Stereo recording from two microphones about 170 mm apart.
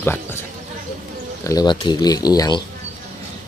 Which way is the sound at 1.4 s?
20° left (ahead or behind).